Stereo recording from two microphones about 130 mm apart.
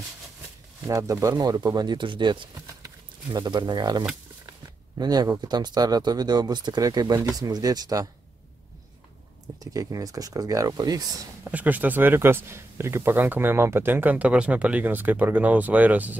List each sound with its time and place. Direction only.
0.8 s speech: 25° right (ahead or behind)
9.6 s speech: 30° right (ahead or behind)
11.4 s speech: 15° right (ahead or behind)